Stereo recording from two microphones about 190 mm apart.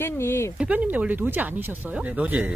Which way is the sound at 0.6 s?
10° right (ahead or behind).